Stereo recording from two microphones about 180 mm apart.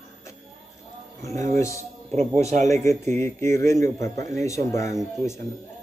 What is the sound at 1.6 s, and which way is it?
Speech, 15° left (ahead or behind).